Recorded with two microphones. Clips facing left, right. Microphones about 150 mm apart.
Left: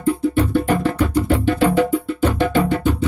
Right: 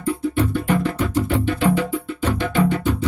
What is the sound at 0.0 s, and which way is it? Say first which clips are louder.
Music: left 3 dB; 35° left (ahead or behind).